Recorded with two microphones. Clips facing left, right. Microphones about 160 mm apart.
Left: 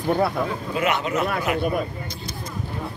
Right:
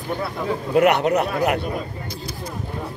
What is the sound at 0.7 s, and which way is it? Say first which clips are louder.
Speech: right 10 dB; 65° right (ahead or behind).